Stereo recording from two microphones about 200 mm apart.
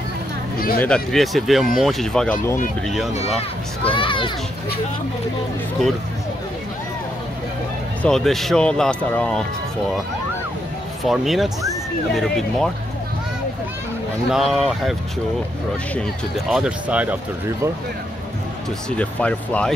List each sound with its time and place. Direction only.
0.7 s speech: 5° left (ahead or behind)
3.1 s speech: 30° left (ahead or behind)
8.0 s speech: centre (ahead or behind)
11.1 s speech: centre (ahead or behind)
14.3 s speech: centre (ahead or behind)
18.9 s speech: 5° left (ahead or behind)